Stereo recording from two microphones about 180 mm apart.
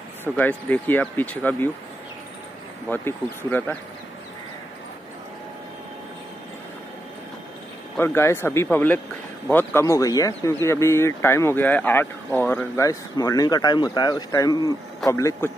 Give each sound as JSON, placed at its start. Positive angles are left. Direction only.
{"t": 0.2, "sound": "speech", "side_deg": 10}
{"t": 2.9, "sound": "speech", "side_deg": 10}
{"t": 8.0, "sound": "speech", "side_deg": 15}